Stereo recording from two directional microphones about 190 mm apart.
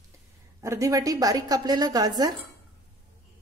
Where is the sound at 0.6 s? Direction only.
15° right (ahead or behind).